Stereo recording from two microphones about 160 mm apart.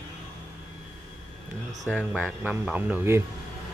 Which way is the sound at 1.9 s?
5° right (ahead or behind).